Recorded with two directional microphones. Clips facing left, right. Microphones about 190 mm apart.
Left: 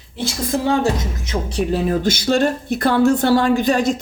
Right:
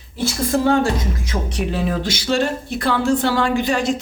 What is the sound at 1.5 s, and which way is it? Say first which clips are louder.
A woman's voice: left 4 dB; 45° left (ahead or behind).